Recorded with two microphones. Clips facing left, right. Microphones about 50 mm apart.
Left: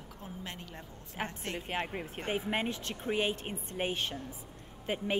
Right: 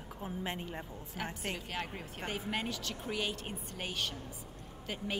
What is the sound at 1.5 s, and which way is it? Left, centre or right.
Speech, left.